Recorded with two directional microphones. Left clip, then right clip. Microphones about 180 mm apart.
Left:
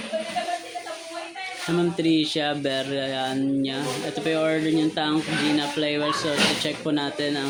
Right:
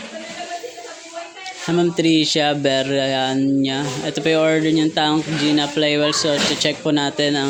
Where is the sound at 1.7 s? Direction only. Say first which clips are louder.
Right 6 dB; 45° right (ahead or behind).